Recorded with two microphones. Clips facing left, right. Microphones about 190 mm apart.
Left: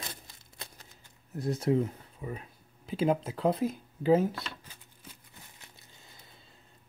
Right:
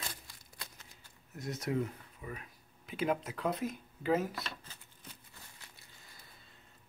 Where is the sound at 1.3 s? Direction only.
30° left (ahead or behind).